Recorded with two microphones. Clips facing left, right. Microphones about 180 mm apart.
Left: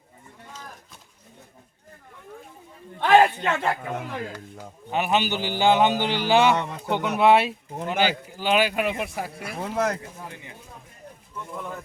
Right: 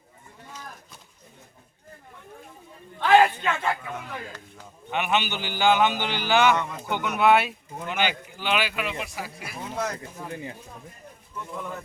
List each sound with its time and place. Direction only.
3.2 s a man's voice: 40° left (ahead or behind); by 9.9 s 60° left (ahead or behind)